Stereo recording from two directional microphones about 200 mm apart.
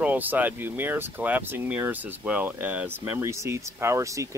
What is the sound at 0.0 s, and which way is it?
Speech, 10° right (ahead or behind).